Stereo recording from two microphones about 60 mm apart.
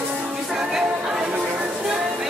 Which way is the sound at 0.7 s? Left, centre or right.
Centre.